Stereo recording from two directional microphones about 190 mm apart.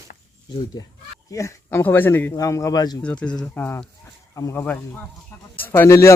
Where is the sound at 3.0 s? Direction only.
5° left (ahead or behind).